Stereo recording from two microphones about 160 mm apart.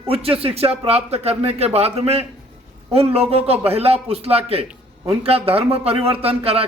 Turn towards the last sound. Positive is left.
turn(degrees=-40)  # may be behind; listen again after turning